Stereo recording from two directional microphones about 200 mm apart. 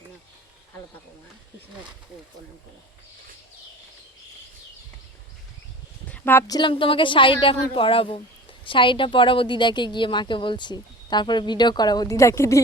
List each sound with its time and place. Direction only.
6.1 s speech: 10° left (ahead or behind)
6.6 s speech: 25° left (ahead or behind)